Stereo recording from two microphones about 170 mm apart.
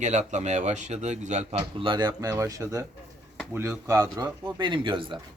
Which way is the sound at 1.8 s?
30° right (ahead or behind).